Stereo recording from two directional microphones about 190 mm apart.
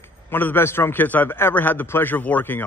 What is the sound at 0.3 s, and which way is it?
Speech, 10° left (ahead or behind).